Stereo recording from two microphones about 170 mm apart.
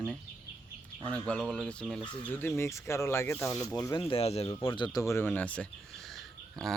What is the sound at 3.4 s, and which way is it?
Speech, 5° left (ahead or behind).